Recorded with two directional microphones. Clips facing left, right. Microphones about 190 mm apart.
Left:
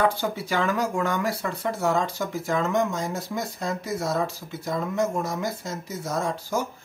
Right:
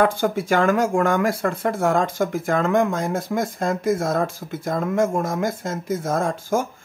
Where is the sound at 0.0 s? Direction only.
50° right (ahead or behind).